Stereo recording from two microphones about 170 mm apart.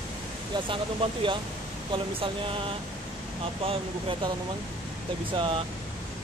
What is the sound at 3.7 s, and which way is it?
Speech, 30° right (ahead or behind).